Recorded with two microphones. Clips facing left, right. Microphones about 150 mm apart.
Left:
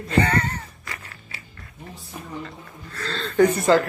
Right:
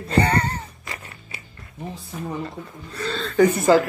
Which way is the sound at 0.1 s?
35° right (ahead or behind).